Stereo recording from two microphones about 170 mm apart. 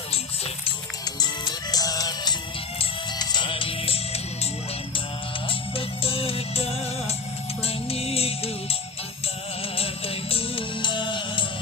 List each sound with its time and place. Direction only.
1.2 s music: 25° left (ahead or behind)
5.5 s music: 35° left (ahead or behind)
9.7 s music: 35° left (ahead or behind)